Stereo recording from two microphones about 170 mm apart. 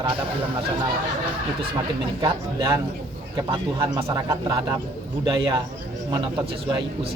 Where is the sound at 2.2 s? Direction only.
25° right (ahead or behind).